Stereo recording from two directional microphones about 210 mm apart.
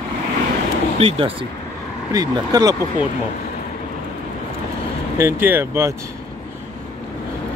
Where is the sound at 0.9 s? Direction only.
25° right (ahead or behind).